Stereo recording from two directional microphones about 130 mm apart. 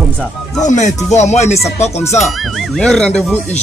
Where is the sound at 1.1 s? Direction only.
60° left (ahead or behind).